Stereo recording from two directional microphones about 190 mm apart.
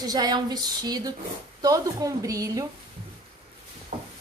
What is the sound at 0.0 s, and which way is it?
A woman's voice, 20° right (ahead or behind).